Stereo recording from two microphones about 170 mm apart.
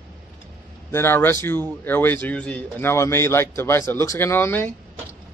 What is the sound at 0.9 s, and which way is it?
Speech, 15° left (ahead or behind).